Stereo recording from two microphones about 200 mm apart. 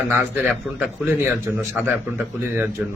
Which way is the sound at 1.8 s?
5° right (ahead or behind).